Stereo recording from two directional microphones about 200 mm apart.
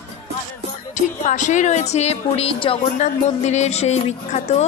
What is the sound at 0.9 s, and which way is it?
A woman's voice, 40° left (ahead or behind).